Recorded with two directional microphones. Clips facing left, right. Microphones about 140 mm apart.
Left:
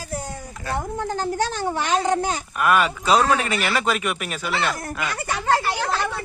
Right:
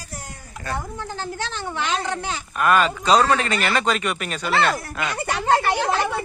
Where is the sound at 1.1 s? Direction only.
40° left (ahead or behind).